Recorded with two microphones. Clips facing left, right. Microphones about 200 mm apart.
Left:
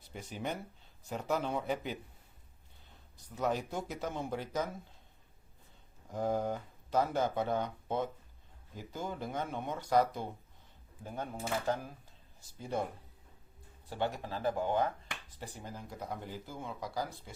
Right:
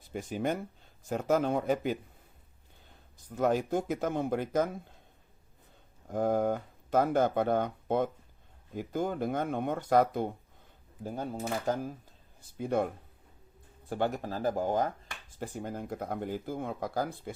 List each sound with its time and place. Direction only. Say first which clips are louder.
0.0 s speech: right 8 dB; 50° right (ahead or behind)
3.3 s speech: right 6 dB; 50° right (ahead or behind)
6.1 s speech: right 5 dB; 55° right (ahead or behind)
11.0 s speech: right 5 dB; 35° right (ahead or behind)
12.5 s speech: right 7 dB; 60° right (ahead or behind)
13.9 s speech: right 5 dB; 50° right (ahead or behind)
15.4 s speech: right 10 dB; 55° right (ahead or behind)